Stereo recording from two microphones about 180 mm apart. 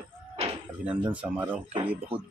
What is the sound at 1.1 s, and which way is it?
Speech, 10° right (ahead or behind).